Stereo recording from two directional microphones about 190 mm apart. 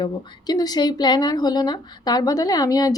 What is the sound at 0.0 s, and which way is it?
Speech, 20° left (ahead or behind).